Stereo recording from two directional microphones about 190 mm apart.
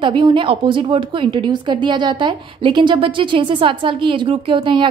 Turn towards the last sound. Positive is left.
turn(degrees=-25)  # may be behind; listen again after turning